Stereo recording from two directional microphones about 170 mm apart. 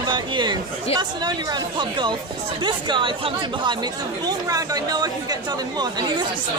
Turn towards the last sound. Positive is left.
turn(degrees=-25)  # may be behind; listen again after turning